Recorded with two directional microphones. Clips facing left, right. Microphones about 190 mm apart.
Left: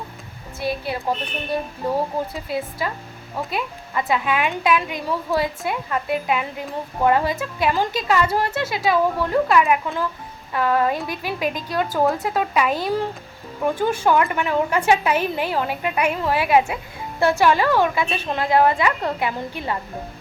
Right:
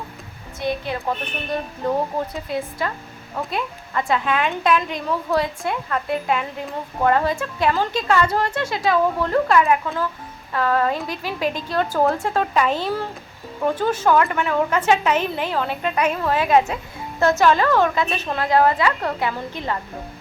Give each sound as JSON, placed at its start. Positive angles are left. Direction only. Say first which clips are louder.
{"t": 0.6, "sound": "speech", "louder": "right 1 dB", "side_deg": 5}
{"t": 2.3, "sound": "a woman's voice", "louder": "even", "side_deg": 5}